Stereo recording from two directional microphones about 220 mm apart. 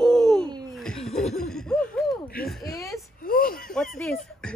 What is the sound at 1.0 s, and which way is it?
Chuckle, 30° left (ahead or behind).